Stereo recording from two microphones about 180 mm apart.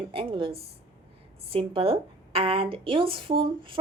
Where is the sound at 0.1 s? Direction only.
30° right (ahead or behind).